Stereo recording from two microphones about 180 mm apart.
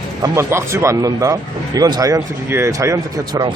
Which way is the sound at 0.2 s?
15° right (ahead or behind).